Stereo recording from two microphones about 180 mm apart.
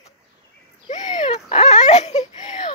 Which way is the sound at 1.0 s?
25° left (ahead or behind).